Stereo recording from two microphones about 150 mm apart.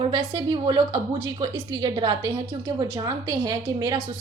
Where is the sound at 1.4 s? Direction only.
30° right (ahead or behind).